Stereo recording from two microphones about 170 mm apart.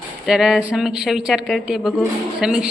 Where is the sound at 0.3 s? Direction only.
5° right (ahead or behind).